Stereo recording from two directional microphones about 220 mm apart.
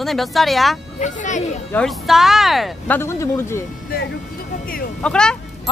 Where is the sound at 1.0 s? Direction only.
35° left (ahead or behind).